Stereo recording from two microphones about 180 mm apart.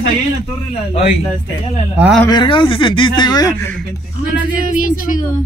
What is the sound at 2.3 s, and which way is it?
Speech, 25° left (ahead or behind).